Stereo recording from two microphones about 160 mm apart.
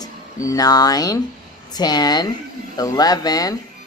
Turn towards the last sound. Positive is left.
turn(degrees=25)  # may be behind; listen again after turning